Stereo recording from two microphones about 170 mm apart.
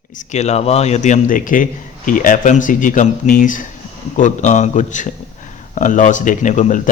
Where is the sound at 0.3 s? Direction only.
40° left (ahead or behind).